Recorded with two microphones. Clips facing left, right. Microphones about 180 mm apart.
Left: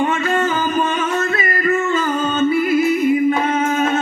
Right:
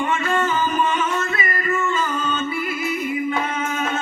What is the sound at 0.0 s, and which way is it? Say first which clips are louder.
Music: left 4 dB; 40° left (ahead or behind).